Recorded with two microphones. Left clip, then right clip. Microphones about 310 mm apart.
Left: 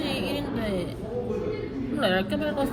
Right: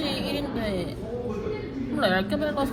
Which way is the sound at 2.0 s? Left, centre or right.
Right.